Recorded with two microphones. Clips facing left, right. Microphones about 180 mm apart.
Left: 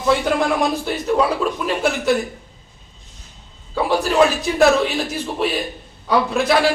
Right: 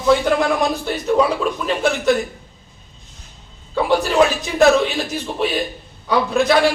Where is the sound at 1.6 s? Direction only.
5° left (ahead or behind).